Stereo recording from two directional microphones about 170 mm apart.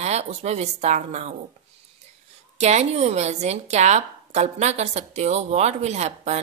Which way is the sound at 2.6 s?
40° right (ahead or behind).